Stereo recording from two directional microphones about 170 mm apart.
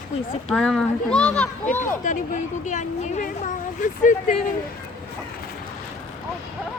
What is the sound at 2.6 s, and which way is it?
Speech, 45° left (ahead or behind).